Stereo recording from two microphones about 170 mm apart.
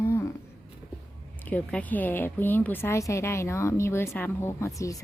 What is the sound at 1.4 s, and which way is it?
Speech, 10° left (ahead or behind).